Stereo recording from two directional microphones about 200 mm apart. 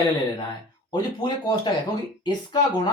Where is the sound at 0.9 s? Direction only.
20° left (ahead or behind).